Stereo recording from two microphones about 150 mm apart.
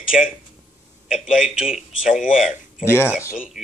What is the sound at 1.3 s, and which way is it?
Speech, 5° right (ahead or behind).